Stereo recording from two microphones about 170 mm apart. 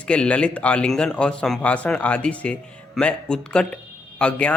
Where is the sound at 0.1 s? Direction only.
5° left (ahead or behind).